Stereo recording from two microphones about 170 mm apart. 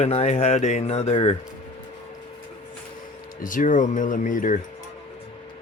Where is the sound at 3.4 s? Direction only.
50° left (ahead or behind).